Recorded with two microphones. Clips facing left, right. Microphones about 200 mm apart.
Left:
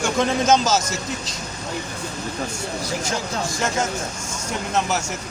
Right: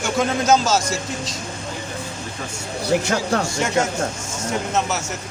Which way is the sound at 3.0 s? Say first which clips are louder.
Right 5 dB; 65° right (ahead or behind).